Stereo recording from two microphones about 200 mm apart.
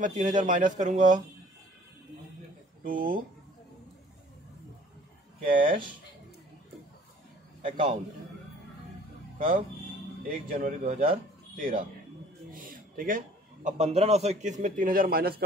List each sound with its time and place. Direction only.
0.0 s a man's voice: 40° right (ahead or behind)
2.8 s speech: 45° right (ahead or behind)
5.6 s a man's voice: 25° right (ahead or behind)
7.6 s a man's voice: 25° right (ahead or behind)
10.2 s a man's voice: 45° right (ahead or behind)